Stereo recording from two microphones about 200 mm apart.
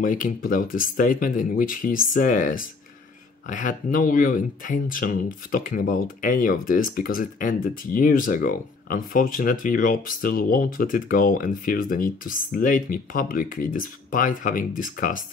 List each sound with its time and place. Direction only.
0.0 s speech: 45° left (ahead or behind)